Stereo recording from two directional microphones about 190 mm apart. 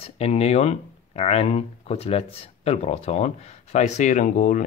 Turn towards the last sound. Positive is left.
turn(degrees=45)  # may be behind; listen again after turning